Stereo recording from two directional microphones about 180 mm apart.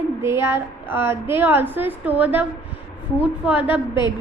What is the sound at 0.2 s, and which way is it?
A woman's voice, 15° right (ahead or behind).